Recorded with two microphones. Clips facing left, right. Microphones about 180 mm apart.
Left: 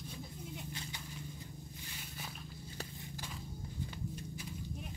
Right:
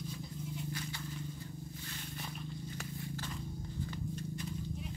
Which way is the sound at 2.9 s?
10° left (ahead or behind).